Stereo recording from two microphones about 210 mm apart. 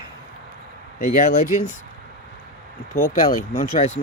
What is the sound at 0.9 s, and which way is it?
Speech, 40° left (ahead or behind).